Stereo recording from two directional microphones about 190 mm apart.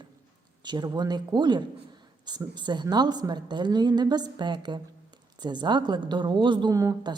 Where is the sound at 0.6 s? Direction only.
25° right (ahead or behind).